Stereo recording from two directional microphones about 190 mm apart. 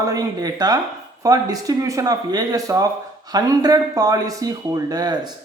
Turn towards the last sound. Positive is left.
turn(degrees=-20)  # may be behind; listen again after turning